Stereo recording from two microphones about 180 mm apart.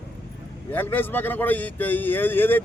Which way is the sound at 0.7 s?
10° left (ahead or behind).